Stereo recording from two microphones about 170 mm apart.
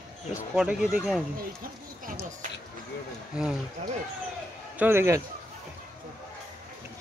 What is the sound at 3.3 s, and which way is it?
Speech, 5° right (ahead or behind).